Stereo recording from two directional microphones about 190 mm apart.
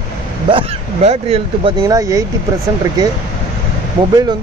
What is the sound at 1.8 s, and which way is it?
Speech, 15° right (ahead or behind).